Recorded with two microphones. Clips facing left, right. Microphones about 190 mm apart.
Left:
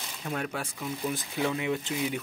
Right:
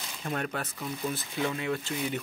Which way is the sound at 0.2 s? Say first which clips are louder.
Even; 5° left (ahead or behind).